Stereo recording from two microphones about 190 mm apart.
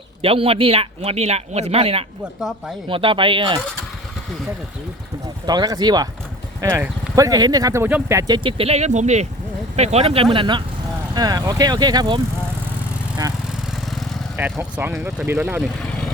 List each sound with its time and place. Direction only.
0.2 s speech: 30° right (ahead or behind)
5.5 s speech: 20° right (ahead or behind)
8.4 s speech: 30° right (ahead or behind)
14.6 s speech: 10° right (ahead or behind)